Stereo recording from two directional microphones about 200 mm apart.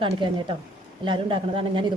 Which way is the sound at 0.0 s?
25° right (ahead or behind).